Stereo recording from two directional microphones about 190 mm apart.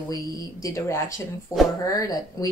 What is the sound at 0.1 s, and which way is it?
Speech, 15° left (ahead or behind).